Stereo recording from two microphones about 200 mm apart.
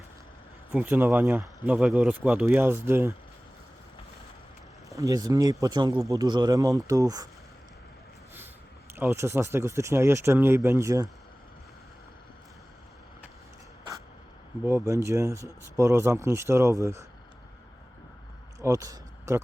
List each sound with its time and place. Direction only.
0.7 s speech: 5° right (ahead or behind)
4.9 s speech: 15° right (ahead or behind)
9.0 s speech: 15° right (ahead or behind)
14.6 s speech: 10° right (ahead or behind)
18.6 s a sound: 15° right (ahead or behind)